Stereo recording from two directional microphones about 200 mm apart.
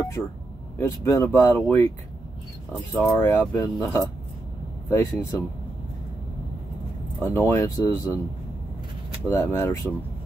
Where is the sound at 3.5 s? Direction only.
15° left (ahead or behind).